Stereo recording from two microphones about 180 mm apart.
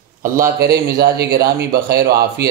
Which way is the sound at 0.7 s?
60° right (ahead or behind).